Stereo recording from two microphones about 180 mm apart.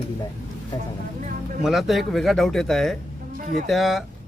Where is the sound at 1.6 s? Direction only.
Centre (ahead or behind).